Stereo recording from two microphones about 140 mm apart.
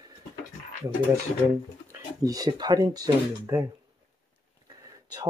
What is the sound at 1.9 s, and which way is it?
Speech, 25° right (ahead or behind).